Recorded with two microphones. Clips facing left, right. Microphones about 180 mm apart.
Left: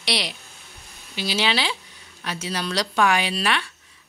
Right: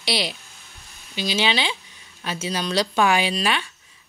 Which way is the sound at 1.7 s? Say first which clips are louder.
Left 1 dB; 25° right (ahead or behind).